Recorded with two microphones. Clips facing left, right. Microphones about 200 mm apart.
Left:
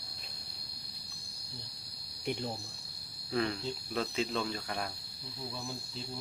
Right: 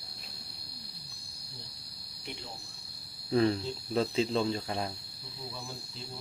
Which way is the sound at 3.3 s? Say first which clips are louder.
Right 6 dB; 35° right (ahead or behind).